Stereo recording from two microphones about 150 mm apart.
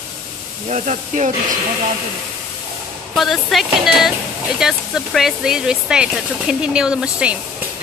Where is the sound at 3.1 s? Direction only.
Centre (ahead or behind).